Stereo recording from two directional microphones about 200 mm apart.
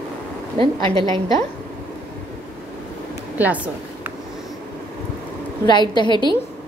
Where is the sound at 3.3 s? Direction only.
5° right (ahead or behind).